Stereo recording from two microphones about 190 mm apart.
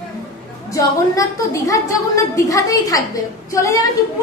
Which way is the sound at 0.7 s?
15° left (ahead or behind).